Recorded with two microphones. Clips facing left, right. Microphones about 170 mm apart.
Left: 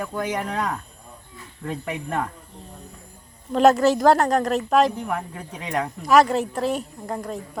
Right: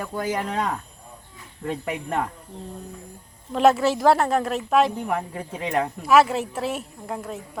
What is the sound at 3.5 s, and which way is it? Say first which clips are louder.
Speech: left 2 dB; centre (ahead or behind).